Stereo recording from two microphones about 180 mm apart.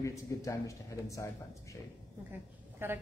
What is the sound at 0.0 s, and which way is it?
Speech, 15° left (ahead or behind).